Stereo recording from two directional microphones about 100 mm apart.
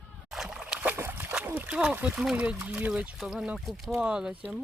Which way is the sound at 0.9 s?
25° right (ahead or behind).